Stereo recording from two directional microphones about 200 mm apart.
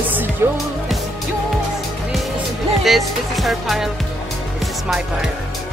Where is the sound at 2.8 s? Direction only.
Centre (ahead or behind).